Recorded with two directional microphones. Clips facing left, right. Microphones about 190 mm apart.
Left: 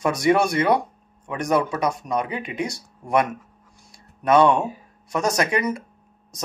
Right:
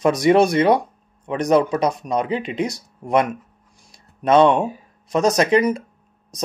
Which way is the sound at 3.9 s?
25° right (ahead or behind).